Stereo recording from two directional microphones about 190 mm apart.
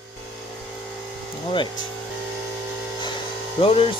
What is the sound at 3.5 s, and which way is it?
Speech, 30° left (ahead or behind).